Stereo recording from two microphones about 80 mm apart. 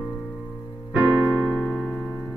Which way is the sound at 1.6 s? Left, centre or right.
Centre.